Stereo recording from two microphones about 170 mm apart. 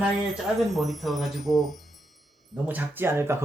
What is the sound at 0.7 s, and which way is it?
Speech, centre (ahead or behind).